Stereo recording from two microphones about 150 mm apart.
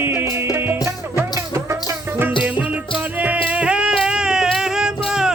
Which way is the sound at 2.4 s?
10° right (ahead or behind).